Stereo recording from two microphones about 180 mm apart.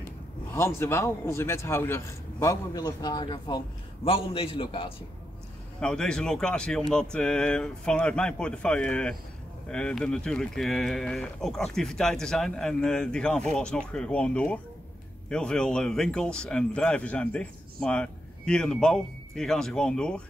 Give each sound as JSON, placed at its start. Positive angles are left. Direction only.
{"t": 0.6, "sound": "a man's voice", "side_deg": 15}
{"t": 5.8, "sound": "speech", "side_deg": 5}